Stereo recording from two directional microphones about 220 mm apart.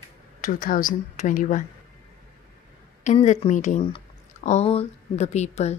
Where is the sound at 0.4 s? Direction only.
40° left (ahead or behind).